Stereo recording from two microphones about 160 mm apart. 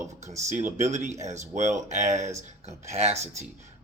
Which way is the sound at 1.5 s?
50° right (ahead or behind).